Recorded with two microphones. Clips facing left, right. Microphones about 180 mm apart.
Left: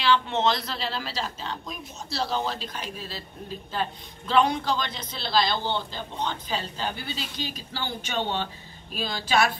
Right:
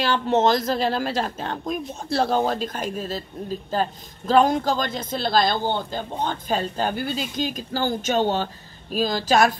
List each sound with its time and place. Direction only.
0.0 s a woman's voice: 45° right (ahead or behind)